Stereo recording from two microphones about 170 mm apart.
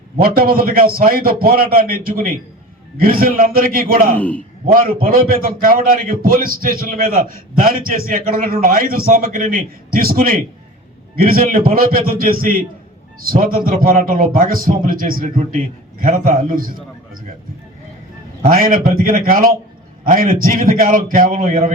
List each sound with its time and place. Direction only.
0.2 s a man's voice: 60° right (ahead or behind)
4.2 s a man's voice: 10° left (ahead or behind)
4.6 s a man's voice: 55° right (ahead or behind)
18.4 s a man's voice: 55° right (ahead or behind)